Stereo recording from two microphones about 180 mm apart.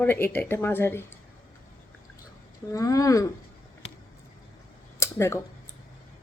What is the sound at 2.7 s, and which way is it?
Speech, 20° left (ahead or behind).